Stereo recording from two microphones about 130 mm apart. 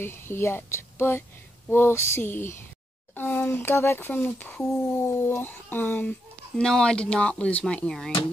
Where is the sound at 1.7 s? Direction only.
20° left (ahead or behind).